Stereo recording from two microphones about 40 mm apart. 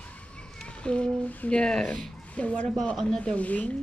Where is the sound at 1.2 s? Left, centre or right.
Left.